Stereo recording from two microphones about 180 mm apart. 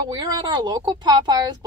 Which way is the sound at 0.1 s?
25° right (ahead or behind).